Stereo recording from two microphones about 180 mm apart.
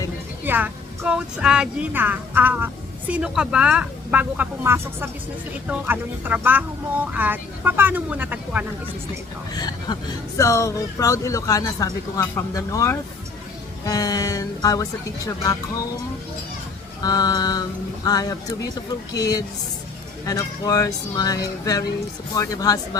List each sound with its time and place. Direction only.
0.4 s speech: 10° right (ahead or behind)
9.6 s speech: 25° left (ahead or behind)
17.0 s speech: 20° left (ahead or behind)